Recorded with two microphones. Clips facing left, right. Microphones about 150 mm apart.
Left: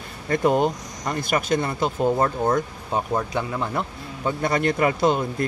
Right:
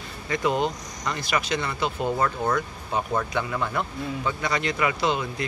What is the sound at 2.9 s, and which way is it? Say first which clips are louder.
Speech: left 2 dB; 20° left (ahead or behind).